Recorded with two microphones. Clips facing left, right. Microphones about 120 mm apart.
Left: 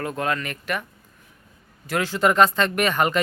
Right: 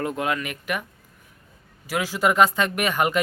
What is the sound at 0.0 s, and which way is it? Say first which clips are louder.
Speech: even; 15° right (ahead or behind).